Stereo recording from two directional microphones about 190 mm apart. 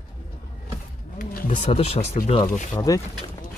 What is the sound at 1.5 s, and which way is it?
Speech, 30° left (ahead or behind).